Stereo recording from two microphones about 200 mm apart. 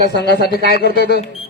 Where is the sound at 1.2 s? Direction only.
30° left (ahead or behind).